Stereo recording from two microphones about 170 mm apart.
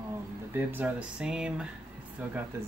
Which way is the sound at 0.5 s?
10° right (ahead or behind).